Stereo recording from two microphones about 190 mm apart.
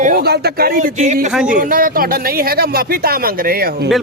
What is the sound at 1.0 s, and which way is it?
Speech, 40° right (ahead or behind).